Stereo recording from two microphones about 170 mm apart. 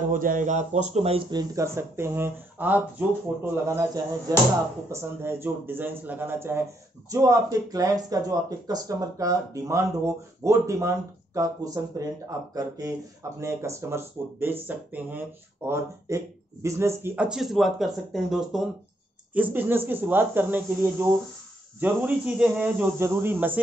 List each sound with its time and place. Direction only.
0.1 s speech: 55° right (ahead or behind); by 23.6 s 10° right (ahead or behind)